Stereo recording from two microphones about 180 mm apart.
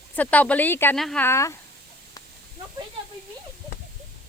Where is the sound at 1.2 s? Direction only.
15° left (ahead or behind).